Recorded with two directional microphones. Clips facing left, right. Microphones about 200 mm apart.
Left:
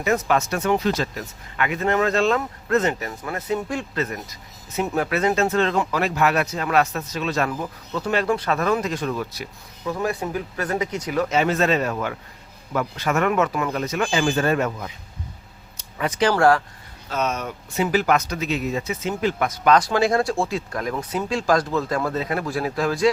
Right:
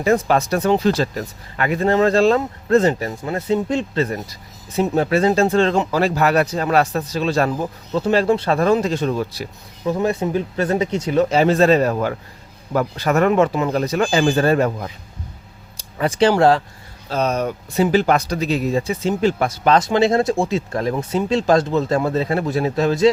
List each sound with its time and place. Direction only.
0.0 s speech: 30° right (ahead or behind)
15.8 s a sound: 30° right (ahead or behind)
16.3 s speech: 25° right (ahead or behind)
17.1 s speech: 35° right (ahead or behind)